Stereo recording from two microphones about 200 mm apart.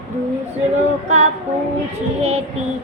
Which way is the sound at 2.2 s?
30° right (ahead or behind).